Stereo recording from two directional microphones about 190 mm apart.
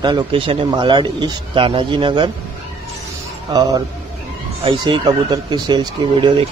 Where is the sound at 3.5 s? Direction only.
20° right (ahead or behind).